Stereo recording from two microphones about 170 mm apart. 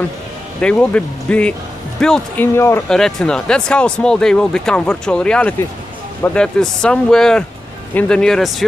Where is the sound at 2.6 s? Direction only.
15° left (ahead or behind).